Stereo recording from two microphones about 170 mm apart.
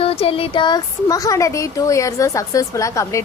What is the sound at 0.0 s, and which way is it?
Speech, 35° left (ahead or behind).